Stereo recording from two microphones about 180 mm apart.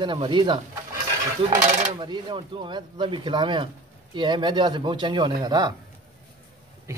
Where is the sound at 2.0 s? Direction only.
25° right (ahead or behind).